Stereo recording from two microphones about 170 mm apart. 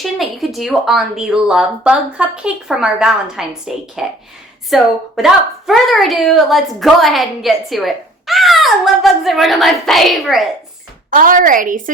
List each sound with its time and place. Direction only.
0.0 s a woman's voice: centre (ahead or behind)
11.1 s a woman's voice: 55° right (ahead or behind)